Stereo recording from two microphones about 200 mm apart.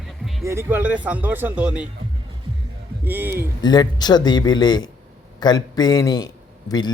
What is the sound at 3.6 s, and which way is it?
A man's voice, 20° left (ahead or behind).